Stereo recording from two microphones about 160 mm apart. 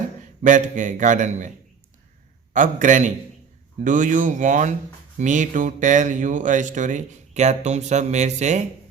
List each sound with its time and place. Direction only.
0.4 s speech: 50° right (ahead or behind)
2.5 s speech: 55° right (ahead or behind)